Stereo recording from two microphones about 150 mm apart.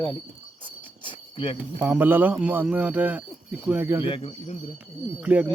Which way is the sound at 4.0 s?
35° left (ahead or behind).